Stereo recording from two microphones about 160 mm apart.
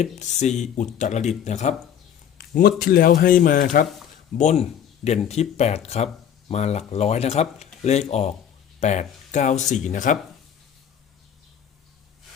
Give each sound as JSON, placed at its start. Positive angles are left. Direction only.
{"t": 0.0, "sound": "speech", "side_deg": 45}
{"t": 2.4, "sound": "speech", "side_deg": 65}
{"t": 4.4, "sound": "speech", "side_deg": 45}